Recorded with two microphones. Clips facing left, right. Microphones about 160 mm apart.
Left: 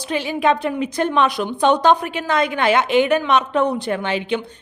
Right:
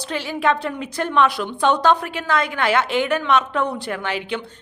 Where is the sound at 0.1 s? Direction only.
15° left (ahead or behind).